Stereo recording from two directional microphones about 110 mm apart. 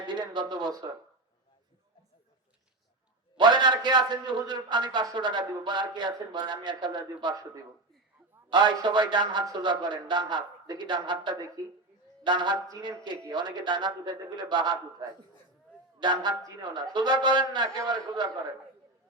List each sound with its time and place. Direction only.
0.0 s a sound: 45° right (ahead or behind)
3.3 s a man's voice: 45° right (ahead or behind)
11.6 s speech: 30° right (ahead or behind)
12.2 s a man's voice: 45° right (ahead or behind)
12.6 s speech: 35° right (ahead or behind)
13.3 s a man's voice: 45° right (ahead or behind)